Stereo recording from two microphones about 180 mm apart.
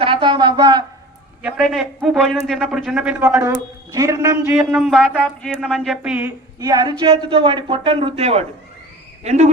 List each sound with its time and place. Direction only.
0.0 s speech: 30° right (ahead or behind)
1.4 s a man's voice: 5° right (ahead or behind)
6.0 s speech: 10° right (ahead or behind)
6.6 s a man's voice: 20° right (ahead or behind); by 9.5 s 40° right (ahead or behind)